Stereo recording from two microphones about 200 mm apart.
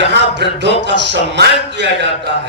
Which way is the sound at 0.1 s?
60° right (ahead or behind).